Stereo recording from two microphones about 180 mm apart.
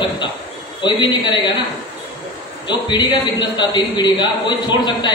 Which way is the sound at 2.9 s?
25° left (ahead or behind).